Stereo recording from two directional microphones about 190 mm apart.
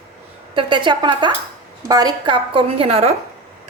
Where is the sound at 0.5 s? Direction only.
25° right (ahead or behind).